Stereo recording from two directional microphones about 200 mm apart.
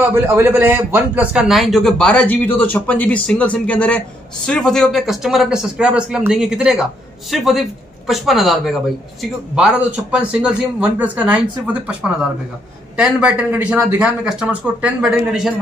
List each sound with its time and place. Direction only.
0.0 s a man's voice: 10° right (ahead or behind)